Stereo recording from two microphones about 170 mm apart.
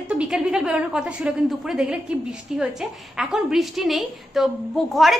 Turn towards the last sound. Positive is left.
turn(degrees=0)  # may be behind; listen again after turning